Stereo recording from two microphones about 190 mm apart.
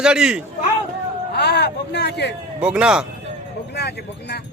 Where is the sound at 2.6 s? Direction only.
5° right (ahead or behind).